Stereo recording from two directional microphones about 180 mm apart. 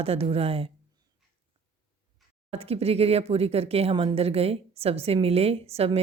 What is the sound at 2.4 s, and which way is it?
Speech, 35° right (ahead or behind).